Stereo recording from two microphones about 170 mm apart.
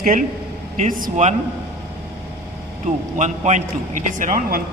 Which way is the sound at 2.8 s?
45° right (ahead or behind).